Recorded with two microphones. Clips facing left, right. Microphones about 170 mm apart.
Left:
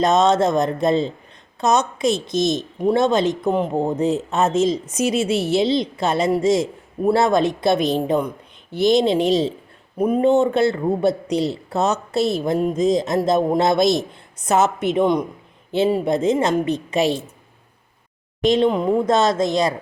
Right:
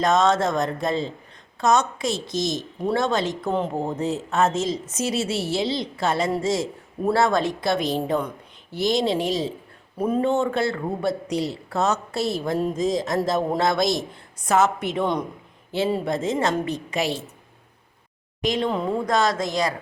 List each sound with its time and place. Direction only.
0.0 s a woman's voice: 20° left (ahead or behind)
18.4 s a woman's voice: 25° left (ahead or behind)